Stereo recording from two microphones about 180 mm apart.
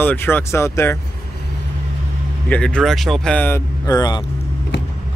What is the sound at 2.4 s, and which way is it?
Speech, 5° left (ahead or behind).